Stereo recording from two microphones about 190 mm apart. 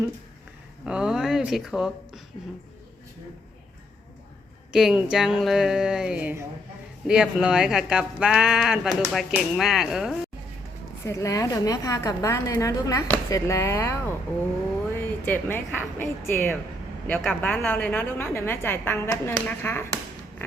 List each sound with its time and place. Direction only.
0.9 s speech: 5° right (ahead or behind)
4.7 s speech: centre (ahead or behind)
11.0 s a woman's voice: 15° left (ahead or behind)